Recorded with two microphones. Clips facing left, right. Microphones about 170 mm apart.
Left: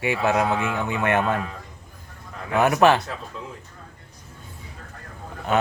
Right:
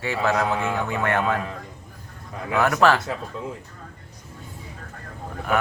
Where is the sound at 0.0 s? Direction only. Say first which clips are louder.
Left 1 dB; 15° left (ahead or behind).